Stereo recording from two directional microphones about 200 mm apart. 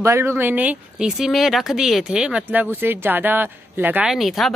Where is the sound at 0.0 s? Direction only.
15° right (ahead or behind).